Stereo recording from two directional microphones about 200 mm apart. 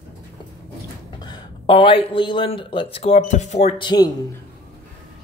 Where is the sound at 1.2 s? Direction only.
20° left (ahead or behind).